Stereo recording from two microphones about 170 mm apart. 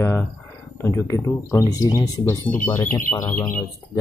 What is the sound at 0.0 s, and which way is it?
Speech, 15° left (ahead or behind).